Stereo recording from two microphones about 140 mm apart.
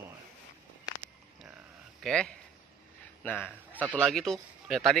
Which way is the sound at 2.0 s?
5° left (ahead or behind).